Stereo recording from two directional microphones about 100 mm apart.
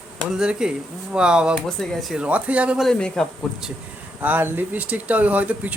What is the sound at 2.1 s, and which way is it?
Speech, 10° right (ahead or behind).